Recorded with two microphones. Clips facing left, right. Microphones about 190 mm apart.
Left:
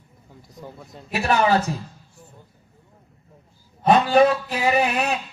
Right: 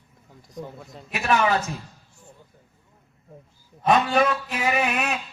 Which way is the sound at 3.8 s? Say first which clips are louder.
Left 4 dB; 35° left (ahead or behind).